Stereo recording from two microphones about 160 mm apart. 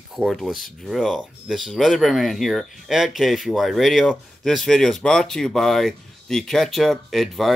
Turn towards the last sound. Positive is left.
turn(degrees=0)  # may be behind; listen again after turning